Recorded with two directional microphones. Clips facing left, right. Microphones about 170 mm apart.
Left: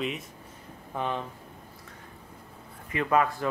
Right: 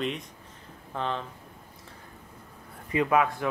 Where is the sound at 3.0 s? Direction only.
5° right (ahead or behind).